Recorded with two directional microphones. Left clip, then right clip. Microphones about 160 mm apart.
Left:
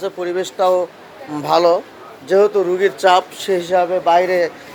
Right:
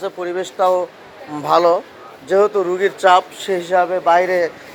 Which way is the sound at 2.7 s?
25° left (ahead or behind).